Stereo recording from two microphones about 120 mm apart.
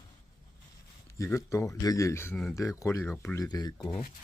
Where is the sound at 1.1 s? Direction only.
25° left (ahead or behind).